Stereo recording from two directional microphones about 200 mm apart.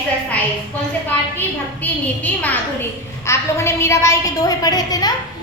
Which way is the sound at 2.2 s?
10° left (ahead or behind).